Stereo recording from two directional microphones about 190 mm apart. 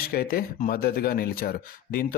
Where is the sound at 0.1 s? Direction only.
55° left (ahead or behind).